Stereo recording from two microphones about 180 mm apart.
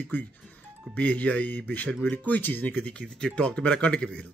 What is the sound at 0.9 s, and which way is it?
Speech, 10° left (ahead or behind).